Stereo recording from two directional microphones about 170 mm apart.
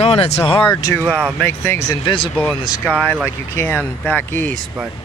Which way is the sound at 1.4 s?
15° left (ahead or behind).